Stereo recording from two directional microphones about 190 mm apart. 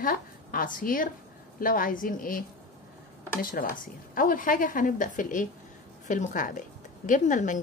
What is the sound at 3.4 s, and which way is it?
A woman's voice, 45° left (ahead or behind).